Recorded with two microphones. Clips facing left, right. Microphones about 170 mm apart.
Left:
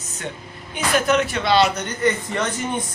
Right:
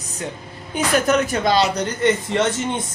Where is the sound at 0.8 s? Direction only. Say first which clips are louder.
Right 1 dB; 40° right (ahead or behind); by 2.8 s 25° right (ahead or behind).